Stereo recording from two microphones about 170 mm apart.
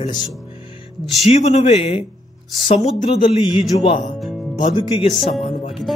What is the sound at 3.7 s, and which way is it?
Speech, 30° left (ahead or behind).